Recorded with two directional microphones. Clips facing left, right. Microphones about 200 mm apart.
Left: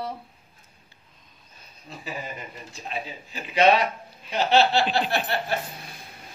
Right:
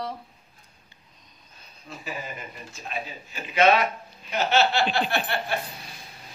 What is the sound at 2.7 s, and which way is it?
Speech, 30° left (ahead or behind).